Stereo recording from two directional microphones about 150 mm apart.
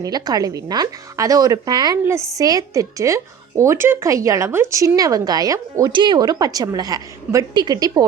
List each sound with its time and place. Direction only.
0.0 s a woman's voice: 25° right (ahead or behind)